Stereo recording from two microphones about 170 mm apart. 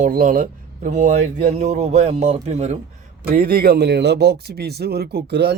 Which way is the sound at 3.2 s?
60° right (ahead or behind).